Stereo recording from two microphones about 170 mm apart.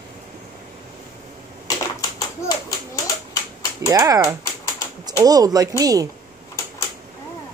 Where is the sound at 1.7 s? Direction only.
20° left (ahead or behind).